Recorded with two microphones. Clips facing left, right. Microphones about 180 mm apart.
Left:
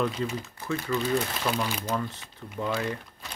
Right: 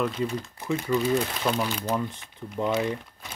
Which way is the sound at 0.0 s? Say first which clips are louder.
Right 1 dB; centre (ahead or behind).